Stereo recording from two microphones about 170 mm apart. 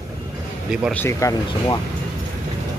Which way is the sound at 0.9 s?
15° left (ahead or behind).